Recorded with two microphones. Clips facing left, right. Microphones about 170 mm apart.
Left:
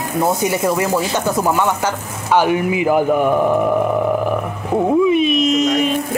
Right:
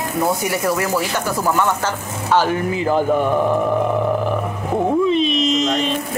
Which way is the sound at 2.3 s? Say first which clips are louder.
Left 3 dB; 15° left (ahead or behind).